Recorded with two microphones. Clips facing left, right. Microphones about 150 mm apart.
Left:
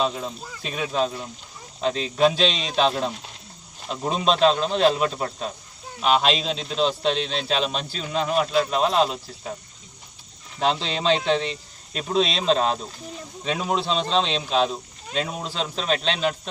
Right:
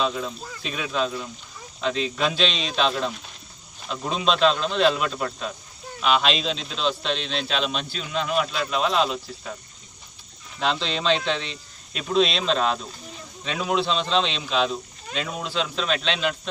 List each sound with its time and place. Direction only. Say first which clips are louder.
0.0 s a man's voice: left 1 dB; 40° left (ahead or behind)
10.6 s a man's voice: left 2 dB; 45° left (ahead or behind)